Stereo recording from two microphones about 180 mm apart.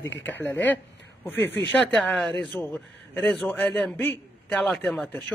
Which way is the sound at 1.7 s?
5° left (ahead or behind).